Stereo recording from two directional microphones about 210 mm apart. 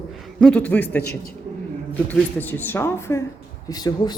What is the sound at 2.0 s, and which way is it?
A woman's voice, 10° left (ahead or behind).